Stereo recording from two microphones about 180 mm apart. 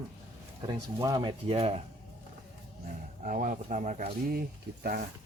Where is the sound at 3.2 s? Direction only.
45° right (ahead or behind).